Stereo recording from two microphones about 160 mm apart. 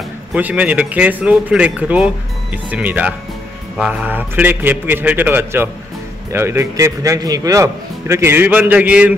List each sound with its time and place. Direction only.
0.3 s speech: 10° right (ahead or behind)